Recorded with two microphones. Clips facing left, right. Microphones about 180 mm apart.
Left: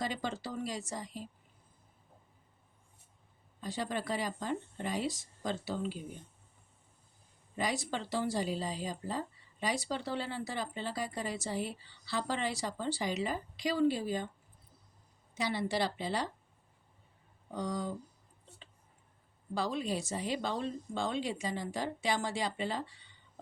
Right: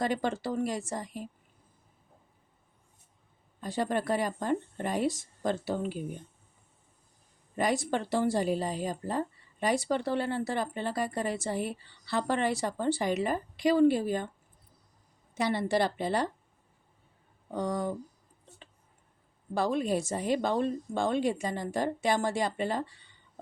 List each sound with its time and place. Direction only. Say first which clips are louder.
0.0 s a woman's voice: right 7 dB; 55° right (ahead or behind)
3.6 s a woman's voice: right 6 dB; 55° right (ahead or behind)
7.5 s a woman's voice: right 6 dB; 55° right (ahead or behind)
15.4 s a woman's voice: right 5 dB; 55° right (ahead or behind)
17.5 s a woman's voice: right 5 dB; 55° right (ahead or behind)
19.5 s a woman's voice: right 6 dB; 50° right (ahead or behind)